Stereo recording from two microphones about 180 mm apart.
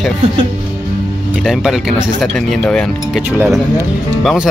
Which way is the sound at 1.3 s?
5° right (ahead or behind).